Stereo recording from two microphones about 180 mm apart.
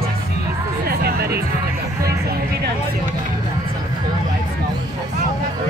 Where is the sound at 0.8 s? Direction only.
60° right (ahead or behind).